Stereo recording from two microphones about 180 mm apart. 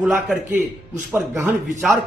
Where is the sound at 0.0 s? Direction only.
5° right (ahead or behind).